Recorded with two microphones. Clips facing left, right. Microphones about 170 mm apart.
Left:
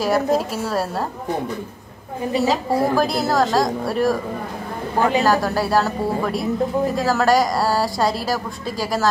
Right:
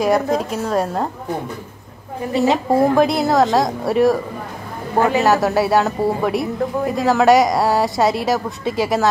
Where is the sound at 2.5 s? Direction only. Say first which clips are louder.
Right 4 dB; centre (ahead or behind).